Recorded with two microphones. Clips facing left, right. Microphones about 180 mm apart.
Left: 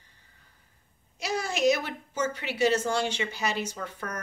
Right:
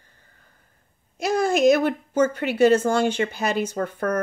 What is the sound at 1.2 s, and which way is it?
A woman's voice, 50° right (ahead or behind).